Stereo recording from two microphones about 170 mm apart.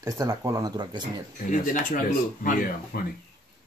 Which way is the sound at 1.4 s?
50° left (ahead or behind).